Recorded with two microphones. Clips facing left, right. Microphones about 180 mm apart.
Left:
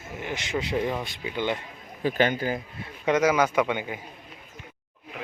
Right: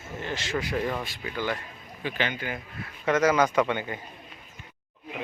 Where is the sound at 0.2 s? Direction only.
15° left (ahead or behind).